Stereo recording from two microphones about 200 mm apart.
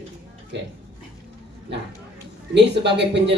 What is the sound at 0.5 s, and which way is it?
Speech, 60° right (ahead or behind).